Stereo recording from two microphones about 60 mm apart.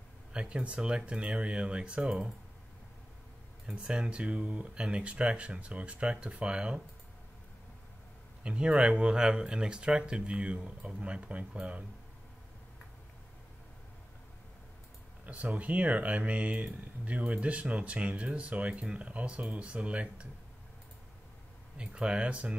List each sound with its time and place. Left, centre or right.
0.3 s speech: centre
3.6 s speech: centre
8.5 s speech: centre
15.2 s speech: right
21.7 s speech: centre